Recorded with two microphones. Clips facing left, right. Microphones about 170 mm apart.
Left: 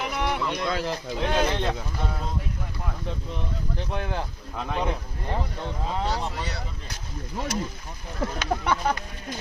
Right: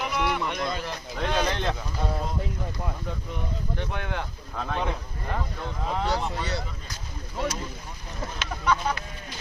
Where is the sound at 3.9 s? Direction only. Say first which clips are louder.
Left 5 dB; 30° left (ahead or behind).